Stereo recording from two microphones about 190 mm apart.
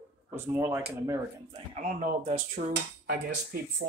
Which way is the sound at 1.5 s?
40° right (ahead or behind).